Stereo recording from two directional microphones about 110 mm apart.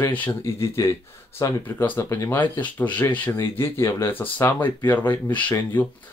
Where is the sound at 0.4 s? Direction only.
25° left (ahead or behind).